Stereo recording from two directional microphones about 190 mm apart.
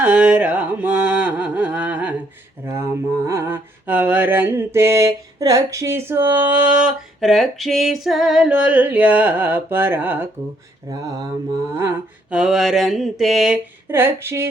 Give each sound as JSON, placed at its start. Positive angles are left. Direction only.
{"t": 0.0, "sound": "carnatic music", "side_deg": -5}
{"t": 3.2, "sound": "mantra", "side_deg": -15}